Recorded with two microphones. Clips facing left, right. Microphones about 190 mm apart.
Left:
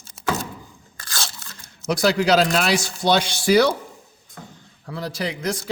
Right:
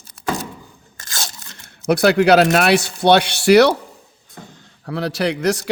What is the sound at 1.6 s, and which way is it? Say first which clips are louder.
Speech: right 6 dB; 60° right (ahead or behind).